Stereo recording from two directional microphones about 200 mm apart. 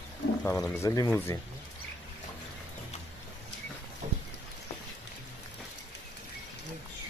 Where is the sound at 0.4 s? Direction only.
10° left (ahead or behind).